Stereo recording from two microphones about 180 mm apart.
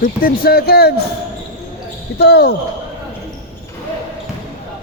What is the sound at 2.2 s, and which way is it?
Speech, 65° left (ahead or behind).